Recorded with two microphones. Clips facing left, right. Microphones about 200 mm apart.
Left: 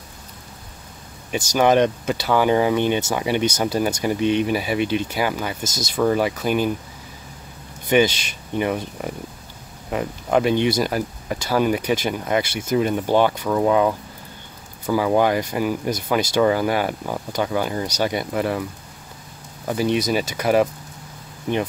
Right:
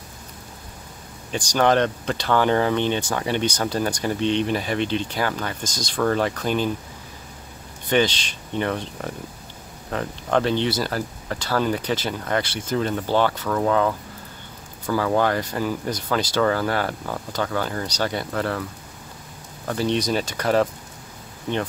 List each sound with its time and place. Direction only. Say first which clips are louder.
1.3 s speech: left 2 dB; 10° left (ahead or behind)
7.9 s speech: left 3 dB; 10° left (ahead or behind)
19.7 s speech: left 2 dB; 10° left (ahead or behind)